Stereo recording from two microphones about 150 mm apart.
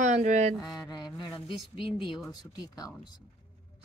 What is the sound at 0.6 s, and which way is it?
Speech, 25° left (ahead or behind).